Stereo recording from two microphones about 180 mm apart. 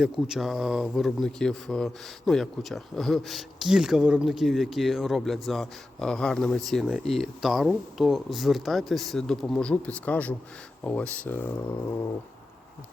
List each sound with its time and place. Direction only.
0.0 s speech: centre (ahead or behind)